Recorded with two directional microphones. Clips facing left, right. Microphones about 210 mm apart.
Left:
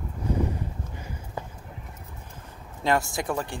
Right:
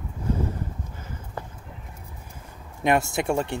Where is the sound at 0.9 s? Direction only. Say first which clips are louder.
Even; 15° left (ahead or behind).